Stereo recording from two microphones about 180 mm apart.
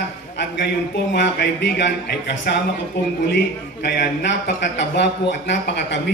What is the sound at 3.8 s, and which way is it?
Speech, 70° left (ahead or behind).